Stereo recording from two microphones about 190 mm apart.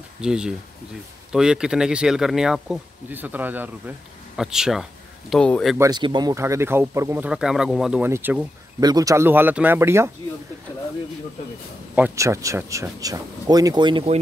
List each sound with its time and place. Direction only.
0.2 s speech: 5° right (ahead or behind)
5.8 s speech: 20° right (ahead or behind)
11.9 s speech: 10° right (ahead or behind); by 14.2 s 30° right (ahead or behind)